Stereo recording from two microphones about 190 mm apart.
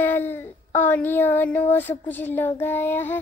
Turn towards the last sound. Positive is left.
turn(degrees=10)  # may be behind; listen again after turning